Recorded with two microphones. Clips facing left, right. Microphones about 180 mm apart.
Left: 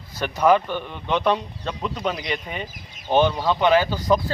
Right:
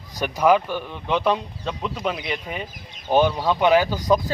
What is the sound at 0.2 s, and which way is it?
Speech, 10° right (ahead or behind).